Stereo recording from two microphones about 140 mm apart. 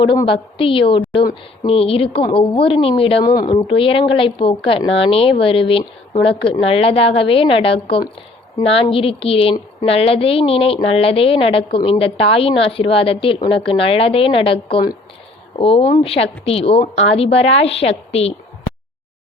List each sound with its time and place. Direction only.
0.0 s a woman's voice: 35° left (ahead or behind)